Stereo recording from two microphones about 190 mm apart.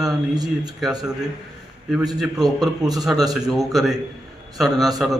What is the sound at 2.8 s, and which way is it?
Speech, 20° right (ahead or behind).